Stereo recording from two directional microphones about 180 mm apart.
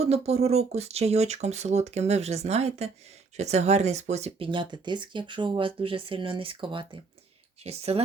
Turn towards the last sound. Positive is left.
turn(degrees=-35)  # may be behind; listen again after turning